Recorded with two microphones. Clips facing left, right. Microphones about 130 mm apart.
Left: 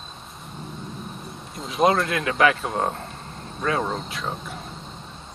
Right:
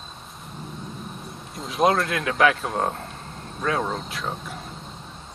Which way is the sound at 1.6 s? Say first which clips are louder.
Left 1 dB; centre (ahead or behind).